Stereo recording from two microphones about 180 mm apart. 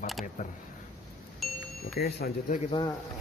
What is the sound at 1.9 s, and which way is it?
Speech, 60° left (ahead or behind).